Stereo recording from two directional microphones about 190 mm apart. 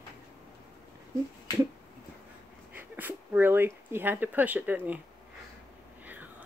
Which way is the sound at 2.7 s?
10° right (ahead or behind).